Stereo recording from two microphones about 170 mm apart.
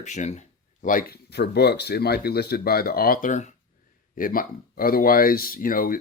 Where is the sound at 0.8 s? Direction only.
60° left (ahead or behind).